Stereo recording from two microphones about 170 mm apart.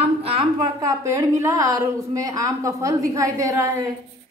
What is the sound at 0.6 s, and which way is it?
A woman's voice, 20° right (ahead or behind).